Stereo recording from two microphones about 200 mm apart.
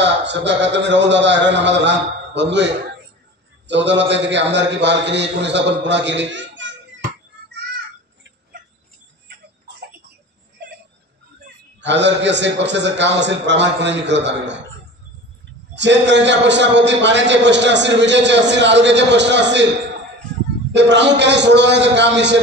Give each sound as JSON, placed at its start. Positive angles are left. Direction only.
{"t": 0.0, "sound": "a man's voice", "side_deg": -60}
{"t": 7.5, "sound": "a sound", "side_deg": -55}
{"t": 9.3, "sound": "tick-tock", "side_deg": -50}
{"t": 11.8, "sound": "a man's voice", "side_deg": -60}
{"t": 15.7, "sound": "a man's voice", "side_deg": -60}
{"t": 20.7, "sound": "a man's voice", "side_deg": -60}